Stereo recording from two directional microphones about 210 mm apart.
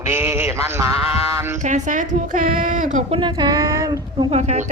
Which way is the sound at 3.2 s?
20° right (ahead or behind).